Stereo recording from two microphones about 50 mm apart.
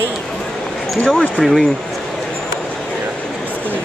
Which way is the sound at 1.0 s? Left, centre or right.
Centre.